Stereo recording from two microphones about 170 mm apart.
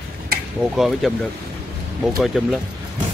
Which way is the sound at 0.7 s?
Centre (ahead or behind).